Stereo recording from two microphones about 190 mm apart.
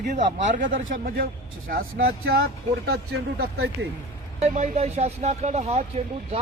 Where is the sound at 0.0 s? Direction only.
40° right (ahead or behind).